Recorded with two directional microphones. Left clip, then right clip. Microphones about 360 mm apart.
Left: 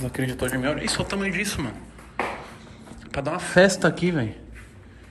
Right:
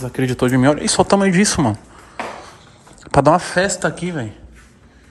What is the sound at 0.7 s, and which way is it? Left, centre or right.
Speech, centre.